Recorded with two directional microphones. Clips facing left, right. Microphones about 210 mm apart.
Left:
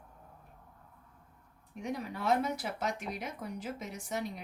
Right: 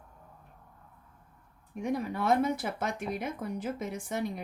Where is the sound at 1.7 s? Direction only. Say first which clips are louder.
Right 6 dB; 55° right (ahead or behind).